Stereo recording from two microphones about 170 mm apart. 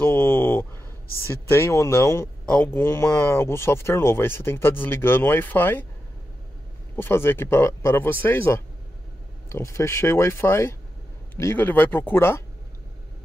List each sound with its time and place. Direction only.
0.0 s a sound: 10° left (ahead or behind)
1.2 s speech: 15° left (ahead or behind)
7.0 s speech: 15° left (ahead or behind)